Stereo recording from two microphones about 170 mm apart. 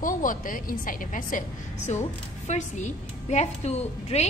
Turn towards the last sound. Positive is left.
turn(degrees=40)  # may be behind; listen again after turning